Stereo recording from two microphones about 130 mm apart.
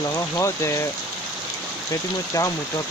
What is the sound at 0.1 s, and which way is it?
Speech, 25° left (ahead or behind).